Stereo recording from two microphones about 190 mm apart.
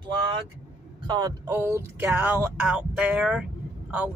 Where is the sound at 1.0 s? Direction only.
25° right (ahead or behind).